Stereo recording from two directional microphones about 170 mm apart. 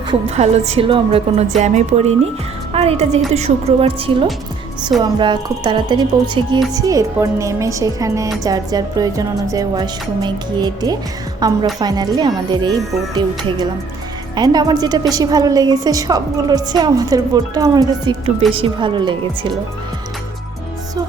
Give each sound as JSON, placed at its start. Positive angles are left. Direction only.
{"t": 0.1, "sound": "a woman's voice", "side_deg": -40}
{"t": 14.3, "sound": "a woman's voice", "side_deg": -25}